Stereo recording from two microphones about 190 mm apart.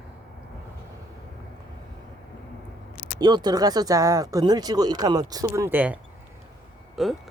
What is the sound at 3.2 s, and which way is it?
Speech, 20° right (ahead or behind).